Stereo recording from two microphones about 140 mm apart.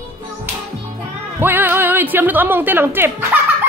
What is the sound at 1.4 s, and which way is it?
Speech, 15° right (ahead or behind).